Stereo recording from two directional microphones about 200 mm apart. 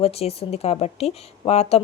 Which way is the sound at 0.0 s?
30° left (ahead or behind).